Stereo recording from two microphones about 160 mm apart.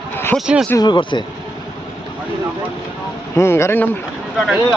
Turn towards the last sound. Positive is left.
turn(degrees=0)  # may be behind; listen again after turning